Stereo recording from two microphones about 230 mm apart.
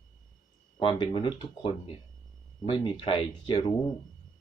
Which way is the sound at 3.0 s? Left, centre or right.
Left.